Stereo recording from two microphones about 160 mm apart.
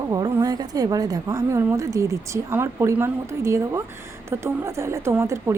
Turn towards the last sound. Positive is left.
turn(degrees=-15)  # may be behind; listen again after turning